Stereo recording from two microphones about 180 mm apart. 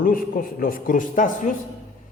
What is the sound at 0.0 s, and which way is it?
Speech, 50° left (ahead or behind).